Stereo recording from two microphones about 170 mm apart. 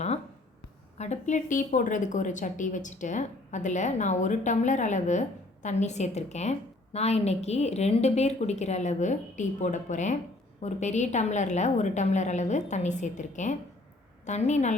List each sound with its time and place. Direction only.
0.9 s a woman's voice: 40° left (ahead or behind)